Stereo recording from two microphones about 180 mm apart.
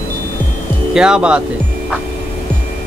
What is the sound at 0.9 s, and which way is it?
Speech, 5° right (ahead or behind).